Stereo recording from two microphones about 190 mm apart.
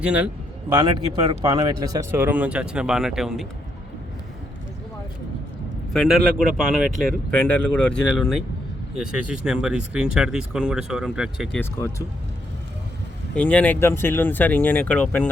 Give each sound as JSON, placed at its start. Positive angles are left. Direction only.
{"t": 0.0, "sound": "speech", "side_deg": -5}
{"t": 0.7, "sound": "speech", "side_deg": -20}
{"t": 5.9, "sound": "speech", "side_deg": 0}
{"t": 11.6, "sound": "speech", "side_deg": 15}
{"t": 13.3, "sound": "speech", "side_deg": 5}